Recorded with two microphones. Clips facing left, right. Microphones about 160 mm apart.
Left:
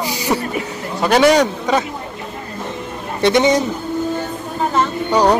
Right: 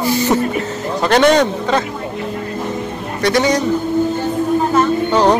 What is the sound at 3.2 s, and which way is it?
Speech, 20° left (ahead or behind).